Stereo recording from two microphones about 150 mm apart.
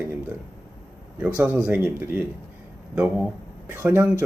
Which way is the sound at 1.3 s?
10° right (ahead or behind).